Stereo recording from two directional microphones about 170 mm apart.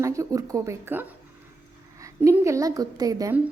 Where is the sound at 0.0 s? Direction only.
20° right (ahead or behind).